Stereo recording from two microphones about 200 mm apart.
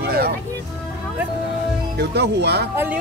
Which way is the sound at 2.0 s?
55° right (ahead or behind).